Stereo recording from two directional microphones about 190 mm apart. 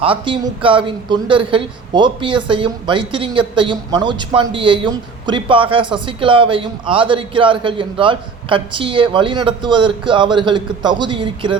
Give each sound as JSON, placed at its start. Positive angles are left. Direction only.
{"t": 0.0, "sound": "speech", "side_deg": -30}